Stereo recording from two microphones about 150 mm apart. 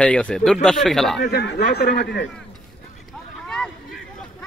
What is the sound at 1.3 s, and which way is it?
Speech, 90° left.